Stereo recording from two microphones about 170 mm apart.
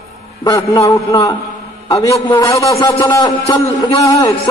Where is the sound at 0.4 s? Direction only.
20° left (ahead or behind).